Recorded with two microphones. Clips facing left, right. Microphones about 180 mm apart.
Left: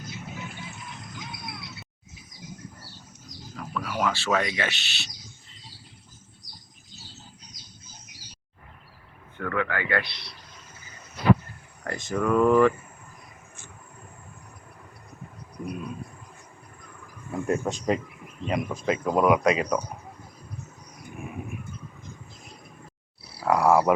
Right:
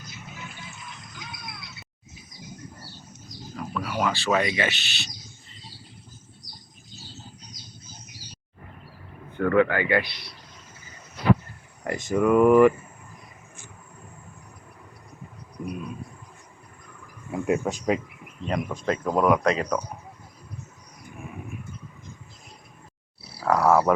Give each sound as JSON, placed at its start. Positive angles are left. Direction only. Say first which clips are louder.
{"t": 3.5, "sound": "speech", "louder": "right 2 dB", "side_deg": -10}
{"t": 9.4, "sound": "speech", "louder": "right 8 dB", "side_deg": -25}
{"t": 11.8, "sound": "speech", "louder": "right 4 dB", "side_deg": -15}
{"t": 15.6, "sound": "a sound", "louder": "right 1 dB", "side_deg": 0}
{"t": 17.4, "sound": "speech", "louder": "right 2 dB", "side_deg": -10}
{"t": 18.4, "sound": "speech", "louder": "even", "side_deg": 5}
{"t": 23.5, "sound": "a sound", "louder": "even", "side_deg": 15}